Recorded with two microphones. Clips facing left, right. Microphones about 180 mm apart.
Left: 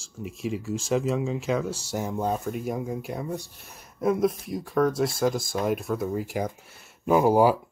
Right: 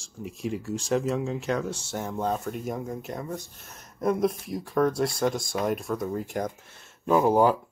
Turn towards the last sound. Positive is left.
turn(degrees=5)  # may be behind; listen again after turning